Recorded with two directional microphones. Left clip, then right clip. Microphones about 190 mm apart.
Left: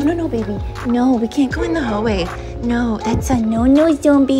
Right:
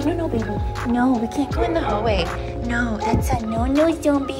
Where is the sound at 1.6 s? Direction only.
30° left (ahead or behind).